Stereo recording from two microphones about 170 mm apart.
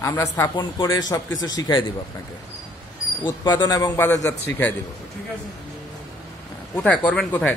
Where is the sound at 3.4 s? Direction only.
25° left (ahead or behind).